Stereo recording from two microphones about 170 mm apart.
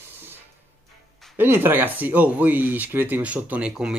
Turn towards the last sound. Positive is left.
turn(degrees=-5)  # may be behind; listen again after turning